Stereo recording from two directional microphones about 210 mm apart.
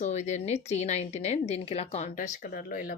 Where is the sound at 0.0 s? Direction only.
35° left (ahead or behind).